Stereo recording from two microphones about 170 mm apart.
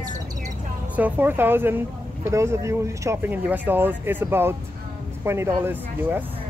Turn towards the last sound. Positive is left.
turn(degrees=-10)  # may be behind; listen again after turning